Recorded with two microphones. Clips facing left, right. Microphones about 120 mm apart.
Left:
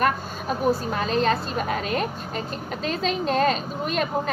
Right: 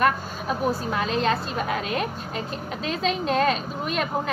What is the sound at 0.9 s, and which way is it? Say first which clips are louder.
A woman's voice: left 1 dB; 40° left (ahead or behind).